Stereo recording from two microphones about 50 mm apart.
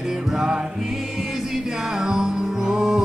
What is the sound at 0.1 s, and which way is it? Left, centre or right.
Music, centre.